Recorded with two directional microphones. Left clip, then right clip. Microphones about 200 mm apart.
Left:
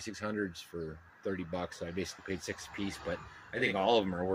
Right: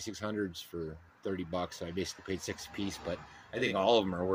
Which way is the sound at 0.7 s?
10° right (ahead or behind).